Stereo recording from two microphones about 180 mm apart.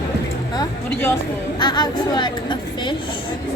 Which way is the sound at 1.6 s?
25° left (ahead or behind).